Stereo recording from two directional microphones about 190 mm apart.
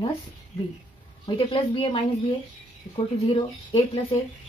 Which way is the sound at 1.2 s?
25° left (ahead or behind).